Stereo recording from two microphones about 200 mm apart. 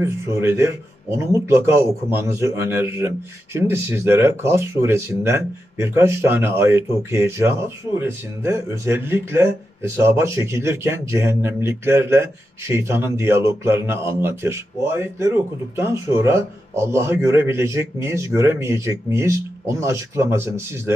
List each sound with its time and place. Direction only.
0.0 s a man's voice: 15° right (ahead or behind)